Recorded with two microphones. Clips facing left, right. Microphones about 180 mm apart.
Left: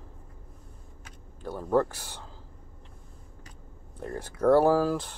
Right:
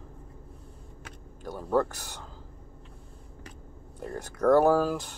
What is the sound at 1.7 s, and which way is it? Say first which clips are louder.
Speech: left 1 dB; 10° left (ahead or behind).